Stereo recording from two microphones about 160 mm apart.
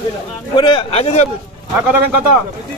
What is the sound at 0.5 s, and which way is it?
Speech, 30° left (ahead or behind).